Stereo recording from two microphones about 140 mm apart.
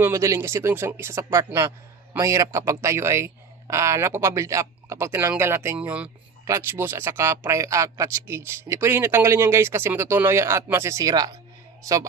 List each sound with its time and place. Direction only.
0.0 s speech: 20° right (ahead or behind)